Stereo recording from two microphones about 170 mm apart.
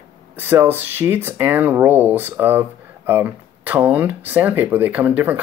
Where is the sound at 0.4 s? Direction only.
10° right (ahead or behind).